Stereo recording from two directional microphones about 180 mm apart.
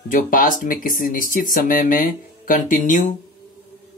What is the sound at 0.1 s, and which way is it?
Speech, 50° left (ahead or behind).